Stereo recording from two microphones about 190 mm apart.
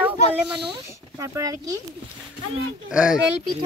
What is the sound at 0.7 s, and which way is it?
Speech, 15° right (ahead or behind).